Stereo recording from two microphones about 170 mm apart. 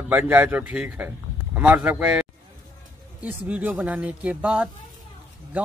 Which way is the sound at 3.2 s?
10° right (ahead or behind).